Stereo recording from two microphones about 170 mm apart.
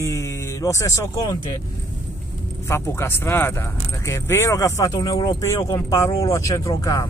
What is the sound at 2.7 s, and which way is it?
Speech, 15° left (ahead or behind).